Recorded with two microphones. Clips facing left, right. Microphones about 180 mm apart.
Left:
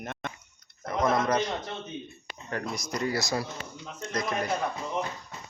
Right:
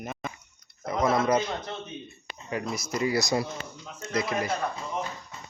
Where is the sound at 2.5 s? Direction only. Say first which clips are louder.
Right 2 dB; 5° right (ahead or behind).